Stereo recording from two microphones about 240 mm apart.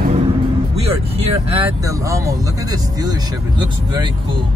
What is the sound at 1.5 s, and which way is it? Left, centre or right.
Speech, centre.